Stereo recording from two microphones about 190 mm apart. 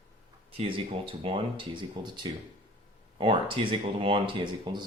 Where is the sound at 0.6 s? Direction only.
30° right (ahead or behind).